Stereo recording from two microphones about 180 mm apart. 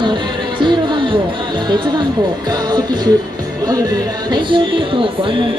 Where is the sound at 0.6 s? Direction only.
25° right (ahead or behind).